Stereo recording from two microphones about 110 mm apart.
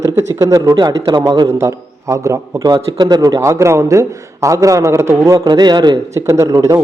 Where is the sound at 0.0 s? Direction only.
30° right (ahead or behind).